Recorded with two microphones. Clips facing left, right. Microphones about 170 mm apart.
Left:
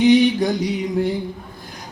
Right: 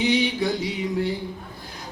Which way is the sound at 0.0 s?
45° left (ahead or behind).